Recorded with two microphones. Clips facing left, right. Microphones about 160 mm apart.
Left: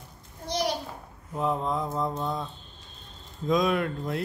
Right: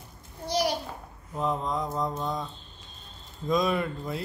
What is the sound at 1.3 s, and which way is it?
Speech, 5° left (ahead or behind).